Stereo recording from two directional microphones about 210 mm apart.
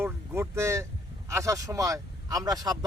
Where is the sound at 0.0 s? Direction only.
15° right (ahead or behind).